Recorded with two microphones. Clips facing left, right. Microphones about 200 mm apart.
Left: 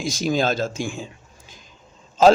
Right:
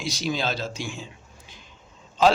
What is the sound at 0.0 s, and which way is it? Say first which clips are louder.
A man's voice: left 6 dB; 50° left (ahead or behind).